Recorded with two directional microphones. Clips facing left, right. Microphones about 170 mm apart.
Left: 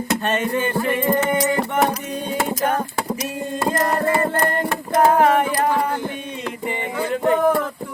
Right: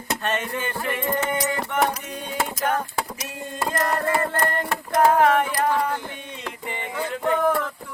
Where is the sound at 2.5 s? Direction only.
35° left (ahead or behind); by 5.9 s 10° left (ahead or behind).